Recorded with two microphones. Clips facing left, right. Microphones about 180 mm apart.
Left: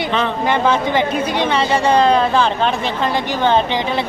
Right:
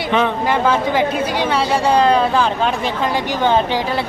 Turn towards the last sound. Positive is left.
turn(degrees=-5)  # may be behind; listen again after turning